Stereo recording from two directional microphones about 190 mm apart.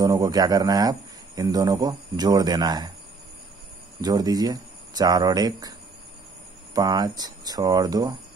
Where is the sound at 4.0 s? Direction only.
20° right (ahead or behind).